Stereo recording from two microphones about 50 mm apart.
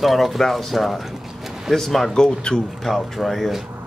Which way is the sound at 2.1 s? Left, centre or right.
Centre.